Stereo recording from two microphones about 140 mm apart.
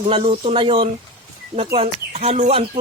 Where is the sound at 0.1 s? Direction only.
40° right (ahead or behind).